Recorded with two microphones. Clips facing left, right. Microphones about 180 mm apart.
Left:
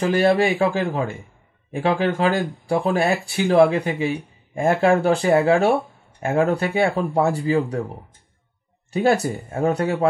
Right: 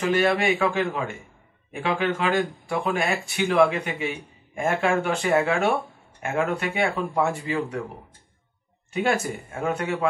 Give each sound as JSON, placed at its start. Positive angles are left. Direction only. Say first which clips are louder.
{"t": 0.0, "sound": "speech", "louder": "left 4 dB", "side_deg": 35}
{"t": 8.9, "sound": "speech", "louder": "left 5 dB", "side_deg": 35}